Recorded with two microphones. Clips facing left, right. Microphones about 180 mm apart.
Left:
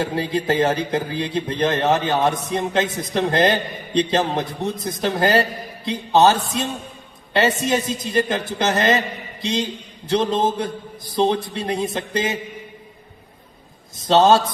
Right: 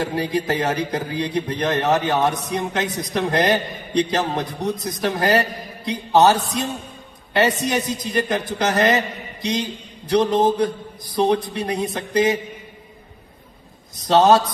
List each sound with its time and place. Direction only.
0.0 s a man's voice: 25° left (ahead or behind)
13.9 s a man's voice: 25° left (ahead or behind)